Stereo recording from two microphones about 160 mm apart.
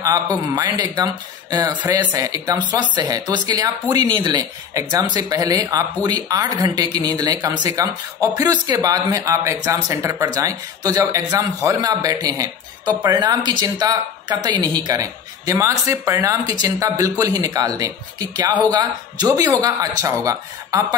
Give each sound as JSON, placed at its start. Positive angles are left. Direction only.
{"t": 0.0, "sound": "speech", "side_deg": -25}